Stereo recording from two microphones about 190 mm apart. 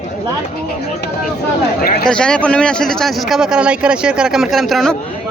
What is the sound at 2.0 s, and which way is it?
Speech, 5° left (ahead or behind).